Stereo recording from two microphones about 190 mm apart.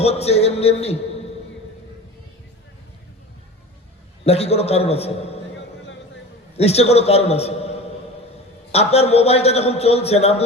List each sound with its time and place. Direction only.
0.0 s a man's voice: 35° left (ahead or behind)
4.3 s a man's voice: 30° left (ahead or behind)
6.6 s a man's voice: 35° left (ahead or behind)